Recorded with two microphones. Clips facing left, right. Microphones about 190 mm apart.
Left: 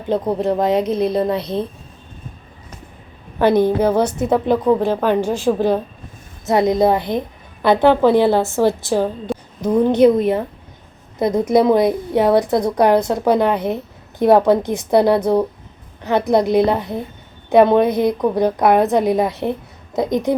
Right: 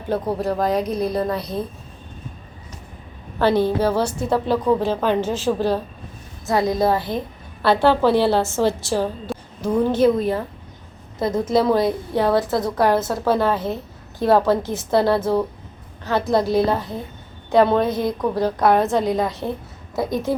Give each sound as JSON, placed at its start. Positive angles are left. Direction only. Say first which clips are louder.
{"t": 0.1, "sound": "a woman's voice", "louder": "left 4 dB", "side_deg": 20}
{"t": 3.3, "sound": "a woman's voice", "louder": "left 4 dB", "side_deg": 15}
{"t": 9.2, "sound": "a sound", "louder": "left 5 dB", "side_deg": -5}
{"t": 9.6, "sound": "a woman's voice", "louder": "left 4 dB", "side_deg": 20}